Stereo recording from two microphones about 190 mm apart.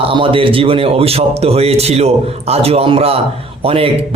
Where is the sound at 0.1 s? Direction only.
25° right (ahead or behind).